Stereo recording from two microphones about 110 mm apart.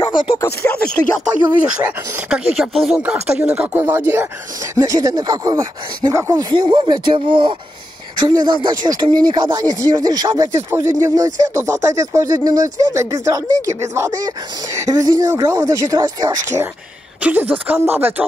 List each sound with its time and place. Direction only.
0.0 s a sound: 50° left (ahead or behind)
2.2 s speech: 5° right (ahead or behind)
4.7 s speech: 35° right (ahead or behind)
6.5 s speech: 50° right (ahead or behind)
17.2 s speech: 15° right (ahead or behind)